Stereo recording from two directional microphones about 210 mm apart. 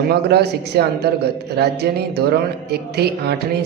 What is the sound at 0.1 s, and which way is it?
Speech, 50° right (ahead or behind).